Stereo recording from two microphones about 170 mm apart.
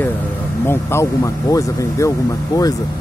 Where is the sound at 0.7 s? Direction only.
15° left (ahead or behind).